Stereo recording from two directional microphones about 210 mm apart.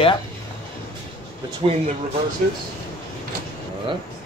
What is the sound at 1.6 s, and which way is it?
Speech, 25° right (ahead or behind).